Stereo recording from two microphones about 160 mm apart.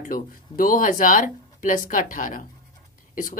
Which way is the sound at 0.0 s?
60° left (ahead or behind).